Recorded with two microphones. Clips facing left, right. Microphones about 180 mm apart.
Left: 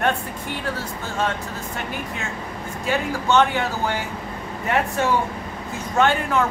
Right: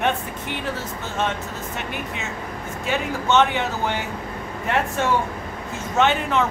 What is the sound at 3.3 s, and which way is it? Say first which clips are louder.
Speech: even; centre (ahead or behind).